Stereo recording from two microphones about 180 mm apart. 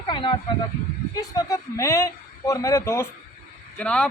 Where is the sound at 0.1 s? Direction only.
30° left (ahead or behind).